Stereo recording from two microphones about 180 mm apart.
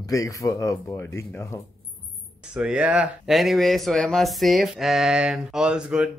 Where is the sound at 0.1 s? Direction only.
20° left (ahead or behind).